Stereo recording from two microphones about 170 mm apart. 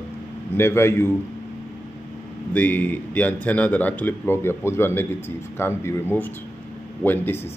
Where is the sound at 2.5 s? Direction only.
10° left (ahead or behind).